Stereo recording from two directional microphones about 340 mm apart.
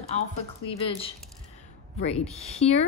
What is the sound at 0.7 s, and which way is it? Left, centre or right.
Speech, centre.